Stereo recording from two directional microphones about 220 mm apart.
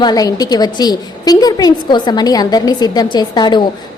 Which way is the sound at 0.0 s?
15° left (ahead or behind).